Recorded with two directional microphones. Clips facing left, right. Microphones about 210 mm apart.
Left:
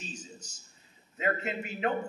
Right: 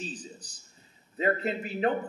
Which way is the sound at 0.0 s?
35° right (ahead or behind).